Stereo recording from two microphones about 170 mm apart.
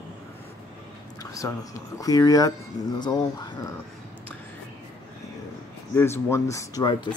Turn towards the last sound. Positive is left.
turn(degrees=25)  # may be behind; listen again after turning